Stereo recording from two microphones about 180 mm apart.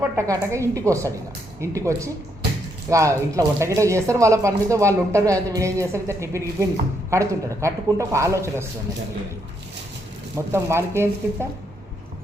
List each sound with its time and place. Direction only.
0.2 s speech: 15° right (ahead or behind)
10.3 s speech: 15° right (ahead or behind)